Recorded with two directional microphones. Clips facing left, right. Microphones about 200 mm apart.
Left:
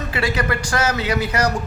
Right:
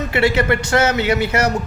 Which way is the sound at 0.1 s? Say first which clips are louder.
Right 6 dB; 25° right (ahead or behind).